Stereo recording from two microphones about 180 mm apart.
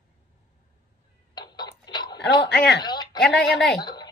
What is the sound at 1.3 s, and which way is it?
Tick-tock, 25° left (ahead or behind).